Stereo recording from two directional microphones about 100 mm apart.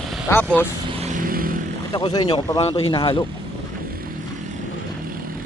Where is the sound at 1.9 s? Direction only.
45° left (ahead or behind).